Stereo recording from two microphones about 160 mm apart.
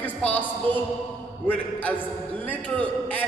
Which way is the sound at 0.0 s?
10° left (ahead or behind).